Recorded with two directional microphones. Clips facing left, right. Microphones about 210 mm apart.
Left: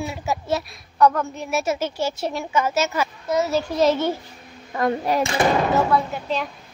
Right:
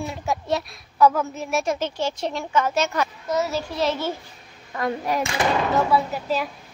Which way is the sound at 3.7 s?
40° left (ahead or behind).